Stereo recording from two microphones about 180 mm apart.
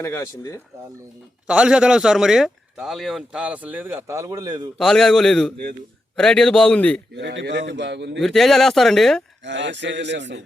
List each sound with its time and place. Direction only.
0.0 s speech: 15° left (ahead or behind)
1.5 s a man's voice: 5° right (ahead or behind); by 4.7 s 20° right (ahead or behind)
4.8 s a man's voice: centre (ahead or behind)
7.1 s a man's voice: 70° right (ahead or behind)
8.2 s a man's voice: centre (ahead or behind)
9.4 s speech: 80° right